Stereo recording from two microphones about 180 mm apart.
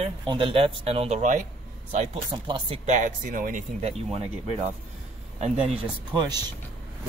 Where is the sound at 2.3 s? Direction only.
25° right (ahead or behind).